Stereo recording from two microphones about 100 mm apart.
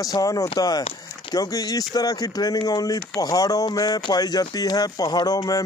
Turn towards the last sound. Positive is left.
turn(degrees=40)  # may be behind; listen again after turning